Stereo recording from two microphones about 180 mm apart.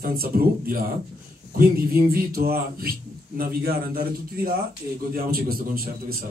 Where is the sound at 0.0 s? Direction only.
55° right (ahead or behind).